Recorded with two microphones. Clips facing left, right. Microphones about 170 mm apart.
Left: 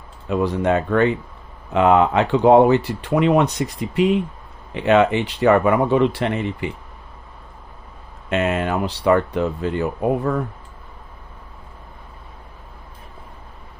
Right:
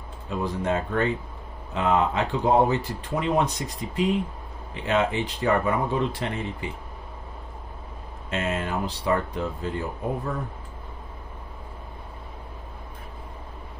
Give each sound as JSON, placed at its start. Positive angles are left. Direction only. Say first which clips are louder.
{"t": 0.3, "sound": "speech", "louder": "left 7 dB", "side_deg": 70}
{"t": 8.3, "sound": "speech", "louder": "left 7 dB", "side_deg": 70}